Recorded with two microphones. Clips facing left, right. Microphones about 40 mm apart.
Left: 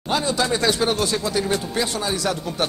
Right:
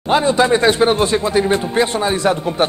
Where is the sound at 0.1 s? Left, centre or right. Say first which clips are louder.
Right 8 dB; right.